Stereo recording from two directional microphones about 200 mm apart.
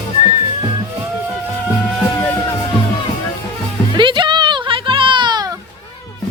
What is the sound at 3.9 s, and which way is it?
Music, 25° right (ahead or behind).